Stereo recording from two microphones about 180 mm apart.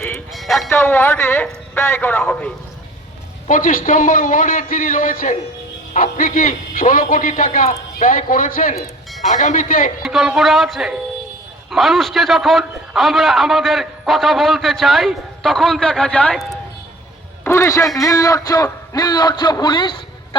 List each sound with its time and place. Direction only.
0.3 s music: centre (ahead or behind)
0.7 s a man's voice: 10° left (ahead or behind)
3.4 s a man's voice: 45° left (ahead or behind)
10.0 s a man's voice: centre (ahead or behind)
17.4 s a man's voice: 15° left (ahead or behind)